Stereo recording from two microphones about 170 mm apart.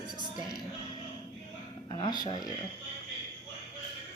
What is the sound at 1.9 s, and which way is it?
Speech, 25° left (ahead or behind).